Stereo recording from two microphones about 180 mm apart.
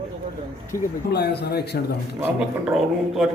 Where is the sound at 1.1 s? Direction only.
65° left (ahead or behind).